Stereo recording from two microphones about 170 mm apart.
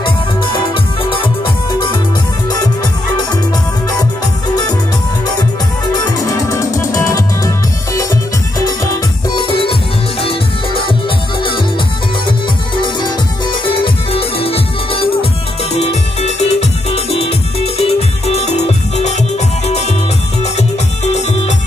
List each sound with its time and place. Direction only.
0.0 s music: 30° left (ahead or behind)
1.7 s music: 25° left (ahead or behind)
5.9 s music: 20° left (ahead or behind)
9.3 s music: 30° left (ahead or behind)
12.8 s music: 30° left (ahead or behind)
20.5 s music: 40° left (ahead or behind)